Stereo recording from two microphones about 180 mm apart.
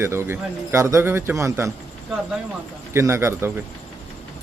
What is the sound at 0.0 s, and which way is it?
A man's voice, 15° right (ahead or behind).